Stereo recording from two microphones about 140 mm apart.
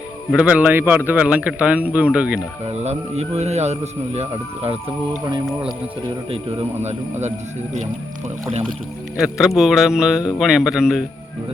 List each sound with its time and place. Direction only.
0.3 s speech: 10° right (ahead or behind)
2.6 s a man's voice: 50° right (ahead or behind)
6.3 s a man's voice: 50° right (ahead or behind)
9.1 s a man's voice: centre (ahead or behind)